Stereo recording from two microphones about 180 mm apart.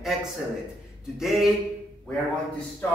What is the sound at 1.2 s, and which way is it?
Speech, centre (ahead or behind).